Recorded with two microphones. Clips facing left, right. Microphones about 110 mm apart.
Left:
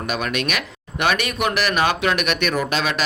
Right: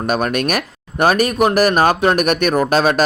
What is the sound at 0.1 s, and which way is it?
Speech, 45° right (ahead or behind).